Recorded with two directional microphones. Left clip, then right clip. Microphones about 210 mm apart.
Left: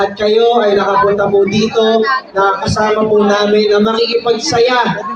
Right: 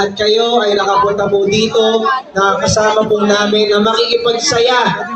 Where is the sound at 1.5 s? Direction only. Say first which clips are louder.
Right 2 dB; 10° right (ahead or behind).